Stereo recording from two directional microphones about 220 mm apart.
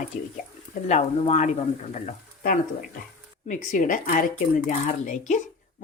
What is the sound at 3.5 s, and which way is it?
Speech, 35° left (ahead or behind).